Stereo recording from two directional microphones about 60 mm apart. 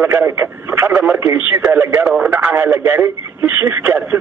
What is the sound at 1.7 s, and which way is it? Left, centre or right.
Speech, right.